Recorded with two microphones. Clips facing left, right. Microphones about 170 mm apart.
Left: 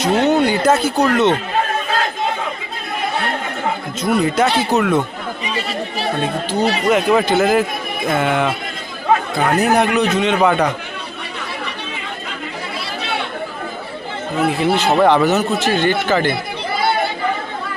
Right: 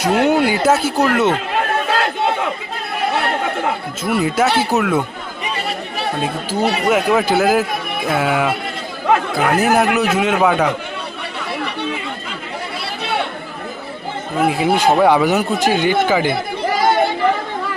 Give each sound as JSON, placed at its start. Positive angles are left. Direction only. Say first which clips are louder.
{"t": 0.0, "sound": "speech", "louder": "even", "side_deg": -10}
{"t": 4.0, "sound": "a man's voice", "louder": "left 1 dB", "side_deg": -5}
{"t": 6.2, "sound": "speech", "louder": "even", "side_deg": -10}
{"t": 14.4, "sound": "a man's voice", "louder": "right 2 dB", "side_deg": -10}